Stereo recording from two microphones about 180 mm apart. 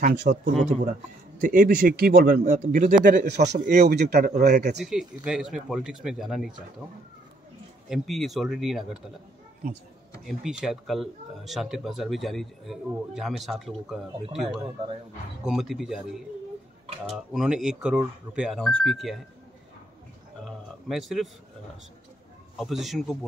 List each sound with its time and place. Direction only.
0.0 s speech: 45° right (ahead or behind)
3.2 s speech: 70° right (ahead or behind)
4.8 s speech: centre (ahead or behind)
7.9 s speech: centre (ahead or behind)
10.2 s speech: centre (ahead or behind)
17.1 s speech: centre (ahead or behind)
20.4 s speech: centre (ahead or behind)
22.6 s speech: centre (ahead or behind)